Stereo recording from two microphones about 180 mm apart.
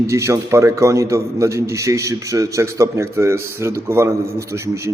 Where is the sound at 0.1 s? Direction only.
15° right (ahead or behind).